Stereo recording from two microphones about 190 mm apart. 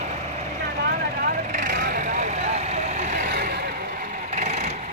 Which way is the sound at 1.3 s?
45° right (ahead or behind).